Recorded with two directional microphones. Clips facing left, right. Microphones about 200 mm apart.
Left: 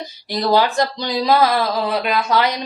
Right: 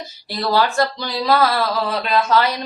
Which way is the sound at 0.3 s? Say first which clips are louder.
Left 2 dB; 15° left (ahead or behind).